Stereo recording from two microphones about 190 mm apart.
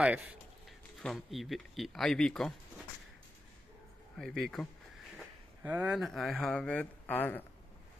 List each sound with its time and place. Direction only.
0.0 s speech: 5° right (ahead or behind)
4.2 s speech: centre (ahead or behind)
5.1 s speech: 10° right (ahead or behind); by 7.4 s 10° left (ahead or behind)